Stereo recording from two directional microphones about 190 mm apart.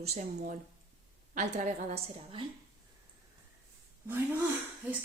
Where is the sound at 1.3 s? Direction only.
40° right (ahead or behind).